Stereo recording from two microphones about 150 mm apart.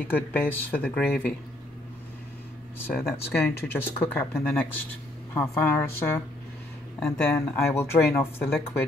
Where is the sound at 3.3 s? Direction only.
15° left (ahead or behind).